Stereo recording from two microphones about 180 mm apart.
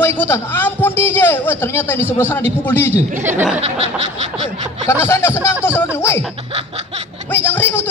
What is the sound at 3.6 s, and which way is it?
Snicker, 35° right (ahead or behind).